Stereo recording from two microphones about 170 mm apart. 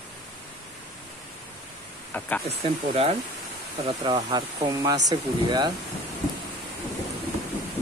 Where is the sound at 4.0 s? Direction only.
25° right (ahead or behind).